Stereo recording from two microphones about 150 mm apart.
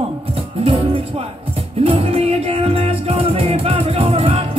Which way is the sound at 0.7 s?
40° right (ahead or behind).